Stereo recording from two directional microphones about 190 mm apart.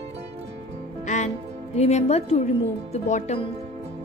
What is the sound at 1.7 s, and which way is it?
Speech, 35° left (ahead or behind).